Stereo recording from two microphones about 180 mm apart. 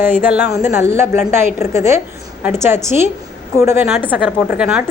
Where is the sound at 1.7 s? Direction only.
15° right (ahead or behind).